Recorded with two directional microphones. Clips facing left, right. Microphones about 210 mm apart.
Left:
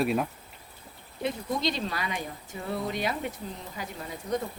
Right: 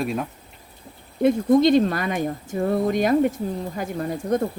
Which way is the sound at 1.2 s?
50° right (ahead or behind).